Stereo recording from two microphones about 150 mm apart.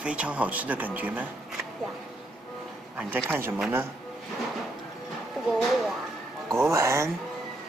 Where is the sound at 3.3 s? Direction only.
15° right (ahead or behind).